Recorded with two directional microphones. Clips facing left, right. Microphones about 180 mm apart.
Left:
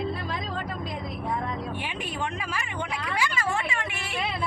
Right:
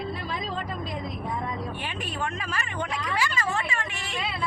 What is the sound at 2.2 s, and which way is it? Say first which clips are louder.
Speech: right 1 dB; 10° left (ahead or behind).